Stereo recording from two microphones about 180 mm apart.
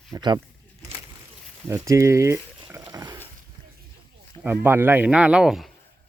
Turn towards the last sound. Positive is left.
turn(degrees=0)  # may be behind; listen again after turning